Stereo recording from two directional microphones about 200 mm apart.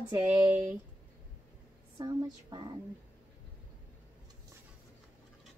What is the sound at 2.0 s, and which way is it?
Speech, 25° right (ahead or behind).